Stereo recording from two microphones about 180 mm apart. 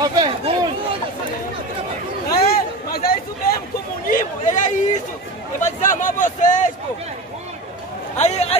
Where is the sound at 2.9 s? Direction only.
55° left (ahead or behind).